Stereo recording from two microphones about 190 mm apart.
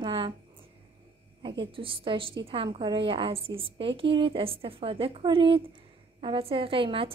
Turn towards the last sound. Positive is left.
turn(degrees=-30)  # may be behind; listen again after turning